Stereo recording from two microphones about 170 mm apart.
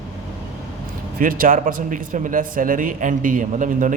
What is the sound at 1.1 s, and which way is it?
A man's voice, 60° right (ahead or behind).